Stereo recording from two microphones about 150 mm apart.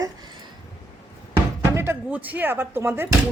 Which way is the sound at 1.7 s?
15° right (ahead or behind).